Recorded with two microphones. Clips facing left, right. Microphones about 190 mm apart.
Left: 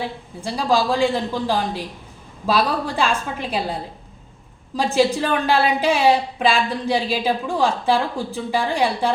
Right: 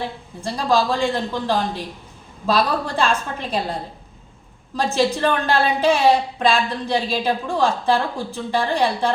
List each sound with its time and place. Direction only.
0.4 s a woman's voice: 10° left (ahead or behind)
4.8 s a woman's voice: 10° left (ahead or behind)